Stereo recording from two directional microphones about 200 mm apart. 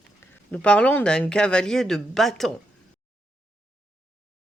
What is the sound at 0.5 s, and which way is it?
Speech, 5° left (ahead or behind).